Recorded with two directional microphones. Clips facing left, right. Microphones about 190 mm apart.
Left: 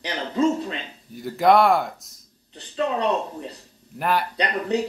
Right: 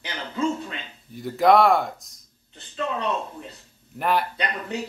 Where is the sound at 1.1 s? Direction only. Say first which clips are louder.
Even; centre (ahead or behind).